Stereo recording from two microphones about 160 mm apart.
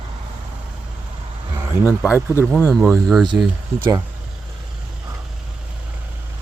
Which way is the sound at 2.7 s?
Centre (ahead or behind).